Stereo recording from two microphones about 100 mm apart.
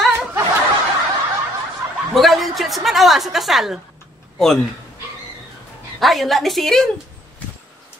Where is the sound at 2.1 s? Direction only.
Centre (ahead or behind).